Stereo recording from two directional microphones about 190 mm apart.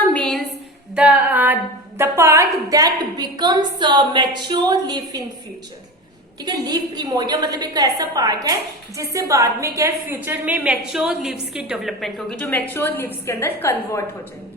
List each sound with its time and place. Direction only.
0.1 s a sound: centre (ahead or behind)
0.9 s female singing: 5° right (ahead or behind)
2.0 s a woman's voice: 15° right (ahead or behind)
6.4 s a woman's voice: 20° right (ahead or behind); by 14.0 s 15° left (ahead or behind)